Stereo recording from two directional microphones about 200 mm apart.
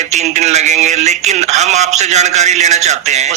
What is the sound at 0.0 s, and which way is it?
A man's voice, 35° right (ahead or behind).